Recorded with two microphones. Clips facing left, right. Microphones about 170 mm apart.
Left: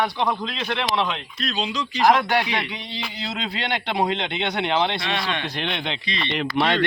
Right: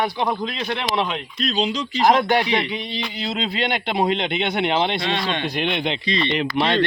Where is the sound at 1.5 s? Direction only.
30° right (ahead or behind).